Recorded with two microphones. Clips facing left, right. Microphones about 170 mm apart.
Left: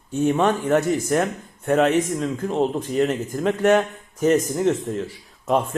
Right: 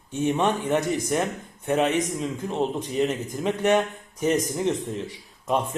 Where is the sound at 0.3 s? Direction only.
45° left (ahead or behind).